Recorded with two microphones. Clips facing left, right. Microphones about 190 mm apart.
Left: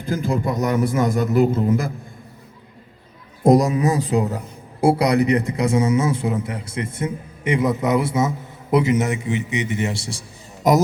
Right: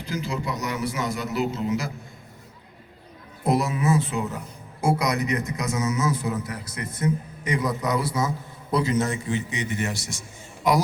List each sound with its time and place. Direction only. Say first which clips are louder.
0.0 s a man's voice: left 7 dB; 50° left (ahead or behind)
3.4 s a man's voice: left 8 dB; 45° left (ahead or behind)